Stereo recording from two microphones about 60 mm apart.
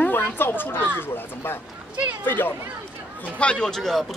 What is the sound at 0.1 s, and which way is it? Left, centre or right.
Speech, left.